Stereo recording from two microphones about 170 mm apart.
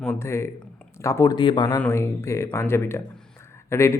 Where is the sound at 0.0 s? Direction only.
10° left (ahead or behind).